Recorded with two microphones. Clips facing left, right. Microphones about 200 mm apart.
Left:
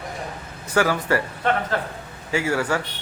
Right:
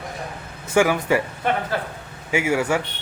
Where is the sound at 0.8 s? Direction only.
15° right (ahead or behind).